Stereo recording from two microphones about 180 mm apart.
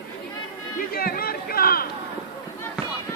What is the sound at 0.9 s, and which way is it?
Chatter, 55° left (ahead or behind).